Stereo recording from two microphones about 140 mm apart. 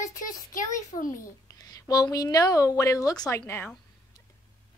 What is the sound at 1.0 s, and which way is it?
A woman's voice, 25° left (ahead or behind).